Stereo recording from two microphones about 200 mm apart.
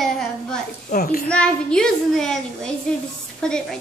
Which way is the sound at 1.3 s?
5° left (ahead or behind).